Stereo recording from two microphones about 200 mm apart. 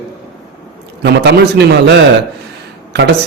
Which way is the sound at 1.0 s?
55° right (ahead or behind).